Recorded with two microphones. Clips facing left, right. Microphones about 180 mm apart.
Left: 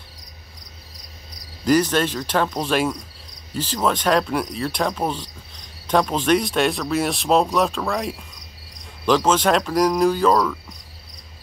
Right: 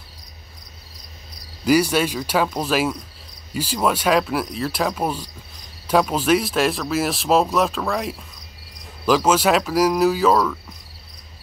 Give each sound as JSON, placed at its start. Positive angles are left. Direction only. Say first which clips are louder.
{"t": 1.6, "sound": "speech", "louder": "even", "side_deg": -10}